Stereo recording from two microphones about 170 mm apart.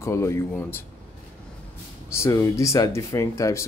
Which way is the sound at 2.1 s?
15° left (ahead or behind).